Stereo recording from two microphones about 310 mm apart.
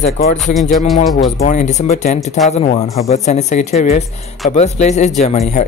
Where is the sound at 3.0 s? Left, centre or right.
Left.